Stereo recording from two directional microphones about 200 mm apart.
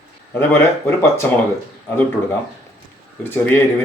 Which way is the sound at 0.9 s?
10° left (ahead or behind).